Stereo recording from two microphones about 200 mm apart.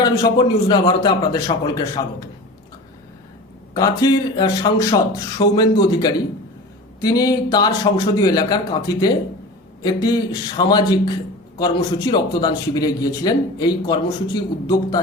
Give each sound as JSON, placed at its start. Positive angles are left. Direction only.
{"t": 0.0, "sound": "a man's voice", "side_deg": 20}
{"t": 3.8, "sound": "a man's voice", "side_deg": 20}